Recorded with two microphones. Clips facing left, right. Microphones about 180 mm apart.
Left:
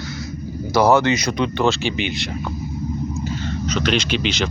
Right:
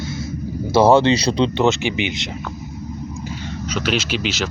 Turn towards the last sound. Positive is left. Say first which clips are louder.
# left 1 dB
turn(degrees=-5)  # may be behind; listen again after turning